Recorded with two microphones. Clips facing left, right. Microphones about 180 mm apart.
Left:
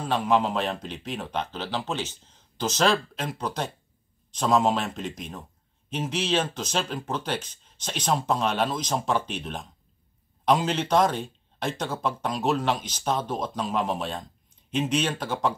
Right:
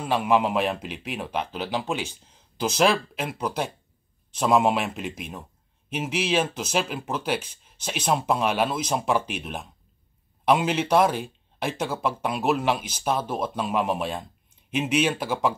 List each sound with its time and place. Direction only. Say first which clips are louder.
0.0 s speech: right 1 dB; 10° right (ahead or behind)